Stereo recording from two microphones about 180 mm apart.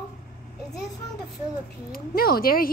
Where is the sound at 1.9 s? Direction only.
55° left (ahead or behind).